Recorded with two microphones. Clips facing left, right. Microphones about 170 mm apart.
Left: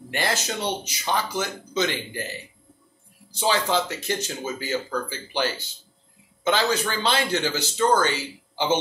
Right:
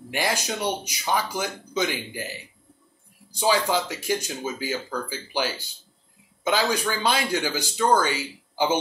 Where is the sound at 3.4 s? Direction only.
10° right (ahead or behind).